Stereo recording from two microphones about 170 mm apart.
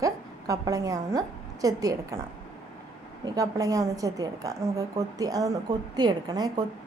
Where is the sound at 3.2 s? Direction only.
20° right (ahead or behind).